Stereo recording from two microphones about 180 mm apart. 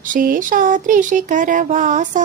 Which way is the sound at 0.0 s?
50° right (ahead or behind).